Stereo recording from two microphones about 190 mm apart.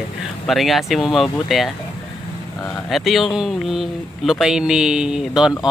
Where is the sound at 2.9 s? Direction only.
Centre (ahead or behind).